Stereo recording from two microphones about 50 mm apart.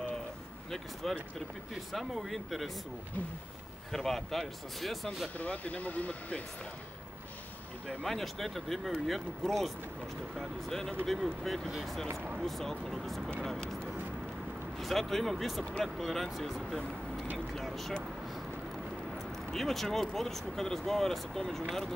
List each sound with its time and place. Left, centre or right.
1.0 s speech: centre
3.9 s speech: centre
5.4 s speech: left
8.0 s speech: centre
14.8 s speech: centre
19.1 s a sound: centre
20.2 s speech: centre